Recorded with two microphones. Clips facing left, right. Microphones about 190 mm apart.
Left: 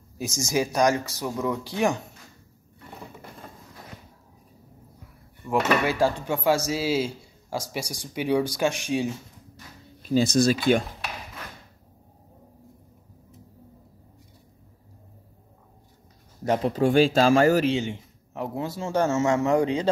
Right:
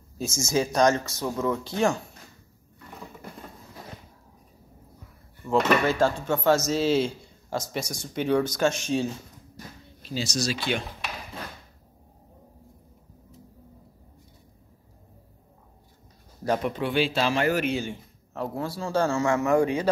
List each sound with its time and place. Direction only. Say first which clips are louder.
0.2 s speech: even; 15° left (ahead or behind)
5.5 s speech: right 1 dB; 10° left (ahead or behind)
10.0 s speech: left 9 dB; 55° left (ahead or behind)
16.4 s speech: left 2 dB; 20° left (ahead or behind)
16.7 s speech: left 6 dB; 45° left (ahead or behind)
17.7 s a man's voice: left 3 dB; 20° left (ahead or behind)